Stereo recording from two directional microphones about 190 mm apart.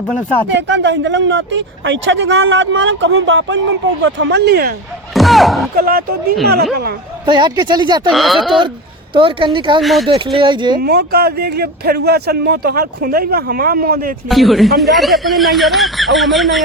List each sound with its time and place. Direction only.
0.5 s speech: 70° right (ahead or behind)
5.1 s speech: centre (ahead or behind)
5.7 s speech: 50° right (ahead or behind)
7.3 s speech: 25° right (ahead or behind)
8.1 s speech: centre (ahead or behind)
9.1 s speech: 25° right (ahead or behind)
9.8 s speech: centre (ahead or behind)
10.3 s speech: 25° right (ahead or behind)
10.8 s speech: 55° right (ahead or behind)
14.3 s speech: centre (ahead or behind)